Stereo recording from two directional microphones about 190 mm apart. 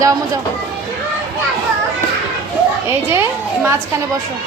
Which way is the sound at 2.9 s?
15° right (ahead or behind).